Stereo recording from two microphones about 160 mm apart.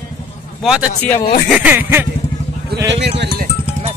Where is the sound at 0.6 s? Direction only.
5° right (ahead or behind).